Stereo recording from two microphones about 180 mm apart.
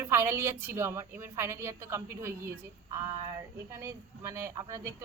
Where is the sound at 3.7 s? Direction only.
15° right (ahead or behind).